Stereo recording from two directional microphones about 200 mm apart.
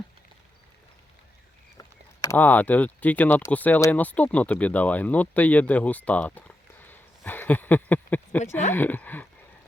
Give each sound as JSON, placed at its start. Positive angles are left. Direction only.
{"t": 1.8, "sound": "speech", "side_deg": 15}